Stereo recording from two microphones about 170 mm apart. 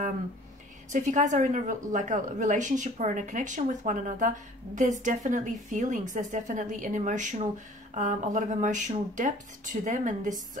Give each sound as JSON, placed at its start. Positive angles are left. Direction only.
{"t": 0.9, "sound": "a woman's voice", "side_deg": -45}